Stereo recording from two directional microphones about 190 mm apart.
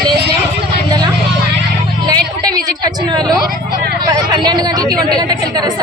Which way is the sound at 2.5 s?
20° right (ahead or behind).